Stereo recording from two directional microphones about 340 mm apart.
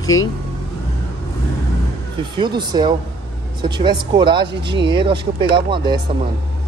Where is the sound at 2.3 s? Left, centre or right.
Centre.